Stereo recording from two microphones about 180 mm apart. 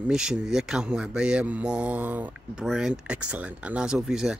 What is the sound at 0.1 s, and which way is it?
Speech, 5° right (ahead or behind).